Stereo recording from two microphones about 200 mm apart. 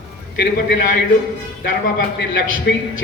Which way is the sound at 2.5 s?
75° left (ahead or behind).